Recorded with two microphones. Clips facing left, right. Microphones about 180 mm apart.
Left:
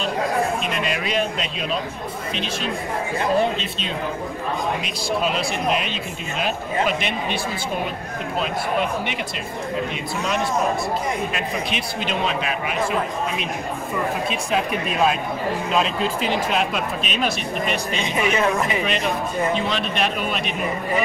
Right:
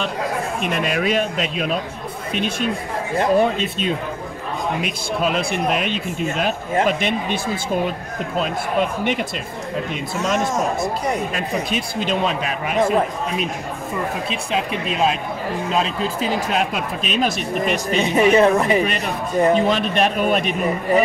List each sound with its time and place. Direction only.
0.6 s speech: 50° right (ahead or behind)
10.1 s speech: 45° right (ahead or behind)
14.3 s speech: 30° right (ahead or behind)
15.7 s speech: 40° right (ahead or behind)